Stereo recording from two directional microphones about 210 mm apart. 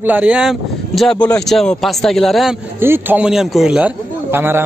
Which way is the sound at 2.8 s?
10° right (ahead or behind).